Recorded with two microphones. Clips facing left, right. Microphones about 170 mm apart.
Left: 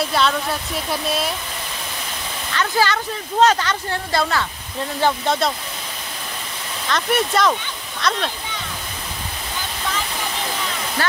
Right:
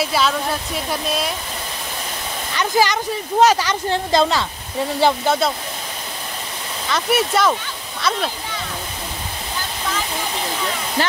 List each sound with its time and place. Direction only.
0.0 s speech: 5° right (ahead or behind)
2.5 s speech: 15° right (ahead or behind)
5.0 s speech: 5° right (ahead or behind)
6.9 s speech: 5° right (ahead or behind)